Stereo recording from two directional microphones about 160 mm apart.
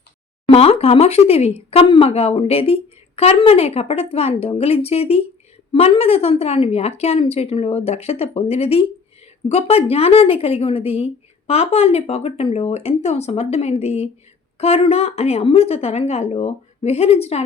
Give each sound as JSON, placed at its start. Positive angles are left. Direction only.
{"t": 0.4, "sound": "a woman's voice", "side_deg": 40}